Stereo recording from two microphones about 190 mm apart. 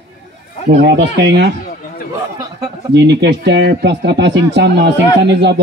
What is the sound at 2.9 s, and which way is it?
A man's voice, 65° right (ahead or behind).